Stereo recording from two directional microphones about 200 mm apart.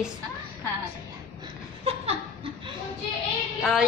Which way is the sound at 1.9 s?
30° right (ahead or behind).